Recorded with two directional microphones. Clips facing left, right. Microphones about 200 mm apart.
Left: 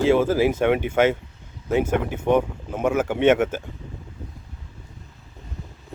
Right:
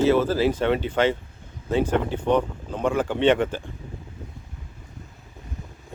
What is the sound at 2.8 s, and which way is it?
Speech, 10° left (ahead or behind).